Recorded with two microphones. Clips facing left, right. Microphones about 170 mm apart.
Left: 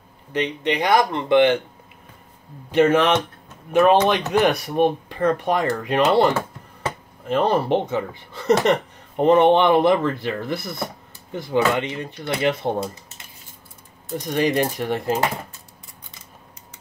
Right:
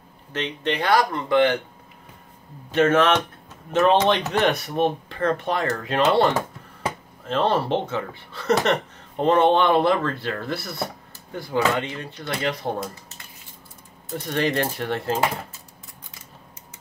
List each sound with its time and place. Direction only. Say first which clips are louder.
0.3 s speech: left 3 dB; 15° left (ahead or behind)
2.7 s speech: left 2 dB; 15° left (ahead or behind)
14.1 s speech: left 3 dB; 15° left (ahead or behind)